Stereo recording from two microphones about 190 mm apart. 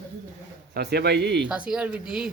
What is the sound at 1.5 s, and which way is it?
Speech, 5° right (ahead or behind).